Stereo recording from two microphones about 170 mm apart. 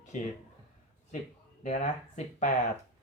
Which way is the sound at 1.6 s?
45° left (ahead or behind).